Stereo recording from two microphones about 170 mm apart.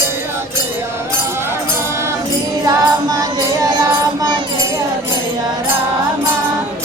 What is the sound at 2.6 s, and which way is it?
Music, 20° right (ahead or behind).